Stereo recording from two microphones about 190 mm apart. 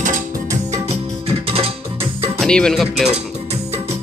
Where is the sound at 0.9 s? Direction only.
35° right (ahead or behind).